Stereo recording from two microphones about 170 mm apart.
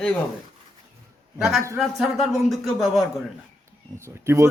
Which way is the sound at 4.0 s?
15° right (ahead or behind).